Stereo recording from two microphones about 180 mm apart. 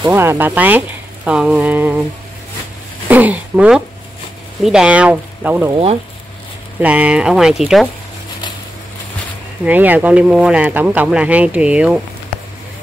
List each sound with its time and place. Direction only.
0.0 s speech: 15° right (ahead or behind)
3.1 s speech: 10° right (ahead or behind)
5.7 s speech: 30° right (ahead or behind)
6.8 s speech: 5° right (ahead or behind)
9.7 s speech: 10° right (ahead or behind)